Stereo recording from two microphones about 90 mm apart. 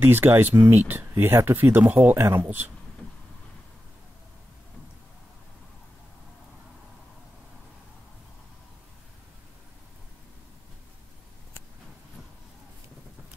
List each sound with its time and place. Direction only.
0.0 s speech: 25° right (ahead or behind)